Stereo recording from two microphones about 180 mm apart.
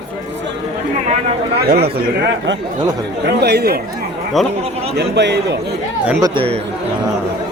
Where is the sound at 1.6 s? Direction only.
60° right (ahead or behind).